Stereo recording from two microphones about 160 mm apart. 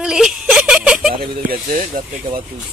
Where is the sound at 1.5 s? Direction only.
55° right (ahead or behind).